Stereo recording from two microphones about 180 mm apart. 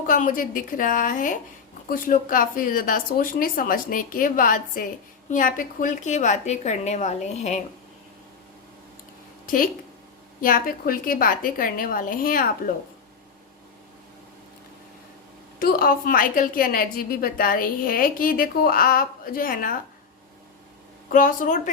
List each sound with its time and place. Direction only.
0.1 s a woman's voice: 50° left (ahead or behind)
10.4 s a woman's voice: 50° left (ahead or behind)
15.5 s a woman's voice: 55° left (ahead or behind)
21.1 s a woman's voice: 50° left (ahead or behind)